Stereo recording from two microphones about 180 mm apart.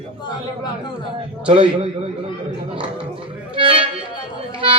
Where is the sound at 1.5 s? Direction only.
35° right (ahead or behind).